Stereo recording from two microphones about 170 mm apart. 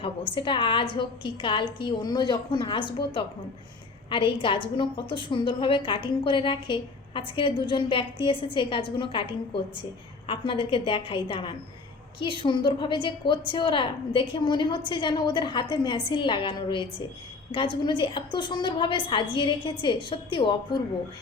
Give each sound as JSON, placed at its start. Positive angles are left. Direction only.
{"t": 0.3, "sound": "a woman's voice", "side_deg": 30}